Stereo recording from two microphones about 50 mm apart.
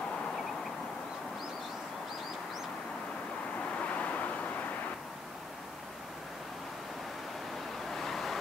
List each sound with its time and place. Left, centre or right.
3.9 s vehicle: left
7.9 s vehicle: centre